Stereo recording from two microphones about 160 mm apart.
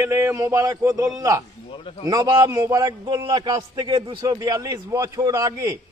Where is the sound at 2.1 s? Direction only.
25° right (ahead or behind).